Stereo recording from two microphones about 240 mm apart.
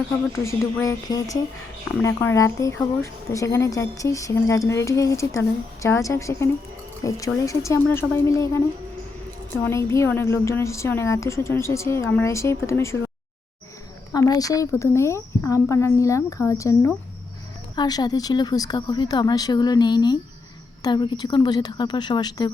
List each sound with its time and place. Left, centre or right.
0.9 s speech: centre
14.1 s speech: centre